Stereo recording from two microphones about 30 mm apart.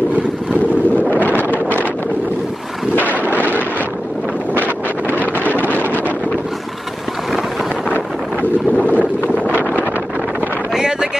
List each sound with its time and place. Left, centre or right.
1.3 s wind noise: right
3.1 s a sound: left
5.0 s wind noise: right
5.6 s wind noise: right
8.7 s boat: left
10.7 s vehicle: right